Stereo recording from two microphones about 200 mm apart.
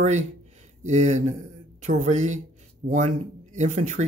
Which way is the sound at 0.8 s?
35° right (ahead or behind).